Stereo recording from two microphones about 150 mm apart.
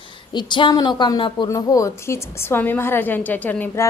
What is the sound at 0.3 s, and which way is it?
A woman's voice, 30° left (ahead or behind).